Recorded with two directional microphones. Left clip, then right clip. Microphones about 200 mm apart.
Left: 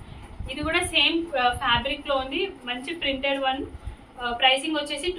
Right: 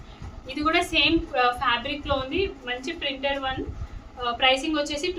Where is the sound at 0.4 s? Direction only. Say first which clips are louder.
Right 2 dB; 60° right (ahead or behind).